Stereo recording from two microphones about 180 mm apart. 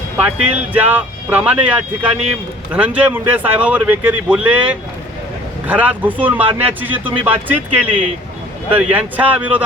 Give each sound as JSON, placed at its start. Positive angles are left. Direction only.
{"t": 0.2, "sound": "a man's voice", "side_deg": -10}